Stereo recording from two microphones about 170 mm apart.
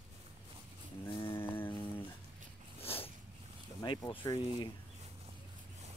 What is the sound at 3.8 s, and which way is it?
Mantra, 30° left (ahead or behind).